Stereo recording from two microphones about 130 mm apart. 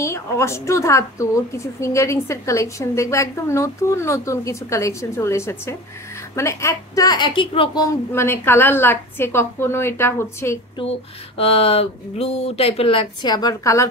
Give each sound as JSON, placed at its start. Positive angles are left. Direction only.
{"t": 0.0, "sound": "a woman's voice", "side_deg": 20}
{"t": 7.8, "sound": "speech", "side_deg": 20}
{"t": 11.3, "sound": "speech", "side_deg": 50}
{"t": 13.2, "sound": "speech", "side_deg": 30}